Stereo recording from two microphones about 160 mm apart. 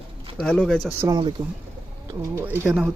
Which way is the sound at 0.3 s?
5° left (ahead or behind).